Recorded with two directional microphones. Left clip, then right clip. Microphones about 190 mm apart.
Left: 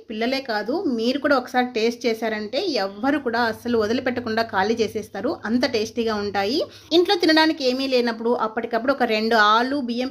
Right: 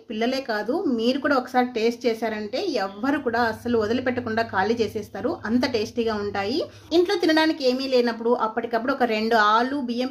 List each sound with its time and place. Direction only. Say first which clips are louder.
0.2 s speech: left 1 dB; 15° left (ahead or behind)